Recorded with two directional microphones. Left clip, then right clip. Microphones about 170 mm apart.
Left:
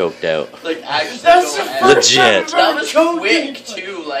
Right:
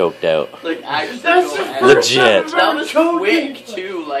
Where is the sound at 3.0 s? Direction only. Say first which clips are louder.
Left 1 dB; 40° left (ahead or behind).